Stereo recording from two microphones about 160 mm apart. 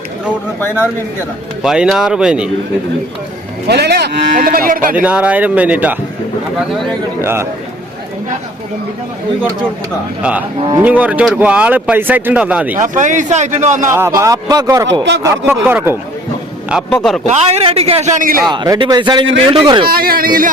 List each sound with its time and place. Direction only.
1.6 s speech: 5° right (ahead or behind)
3.7 s speech: 90° right; by 4.9 s 65° right (ahead or behind)
4.9 s speech: 10° right (ahead or behind)
6.6 s speech: centre (ahead or behind)
7.2 s speech: 15° right (ahead or behind)
10.2 s speech: 5° right (ahead or behind)
12.7 s a man's voice: 50° right (ahead or behind)
13.8 s speech: 15° right (ahead or behind)
16.6 s speech: centre (ahead or behind)
17.2 s a man's voice: 40° right (ahead or behind); by 18.4 s 60° right (ahead or behind)
18.4 s speech: 25° right (ahead or behind)
19.9 s speech: 65° right (ahead or behind)